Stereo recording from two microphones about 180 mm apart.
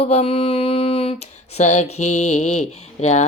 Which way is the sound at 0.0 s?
35° left (ahead or behind).